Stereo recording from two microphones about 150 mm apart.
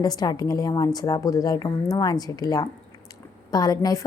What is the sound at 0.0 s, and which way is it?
A woman's voice, 25° left (ahead or behind).